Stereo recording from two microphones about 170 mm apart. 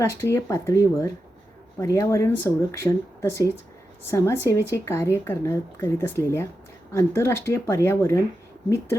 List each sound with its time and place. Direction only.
0.0 s a woman's voice: 15° left (ahead or behind)